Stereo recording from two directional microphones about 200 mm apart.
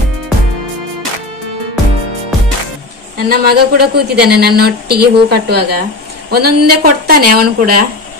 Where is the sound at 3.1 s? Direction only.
50° right (ahead or behind).